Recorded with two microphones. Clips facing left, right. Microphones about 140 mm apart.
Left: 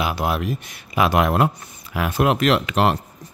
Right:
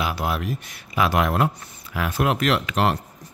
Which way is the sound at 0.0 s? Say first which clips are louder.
Left 3 dB; 20° left (ahead or behind).